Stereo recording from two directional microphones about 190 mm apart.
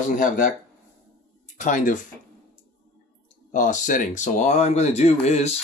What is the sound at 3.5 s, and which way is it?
Speech, 40° left (ahead or behind).